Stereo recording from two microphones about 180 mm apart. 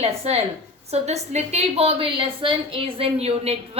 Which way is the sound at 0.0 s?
35° right (ahead or behind).